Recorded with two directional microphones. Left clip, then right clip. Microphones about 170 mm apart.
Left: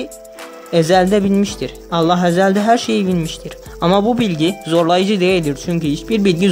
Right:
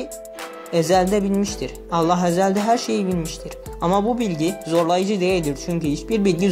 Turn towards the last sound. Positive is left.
turn(degrees=25)  # may be behind; listen again after turning